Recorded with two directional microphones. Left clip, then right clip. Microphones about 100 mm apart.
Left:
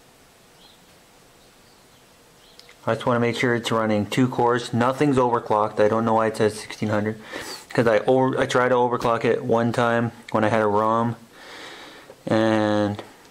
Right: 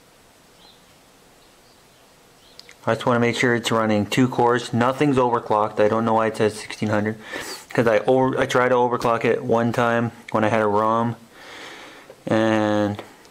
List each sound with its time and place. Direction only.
2.5 s speech: 15° right (ahead or behind)